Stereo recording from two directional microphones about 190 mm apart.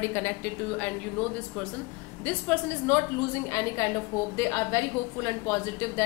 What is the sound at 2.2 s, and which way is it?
A woman's voice, 10° left (ahead or behind).